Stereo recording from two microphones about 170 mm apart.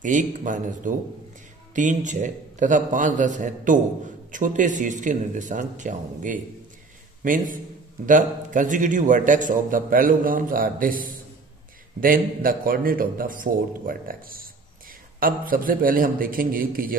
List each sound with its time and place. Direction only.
0.0 s a man's voice: 50° right (ahead or behind)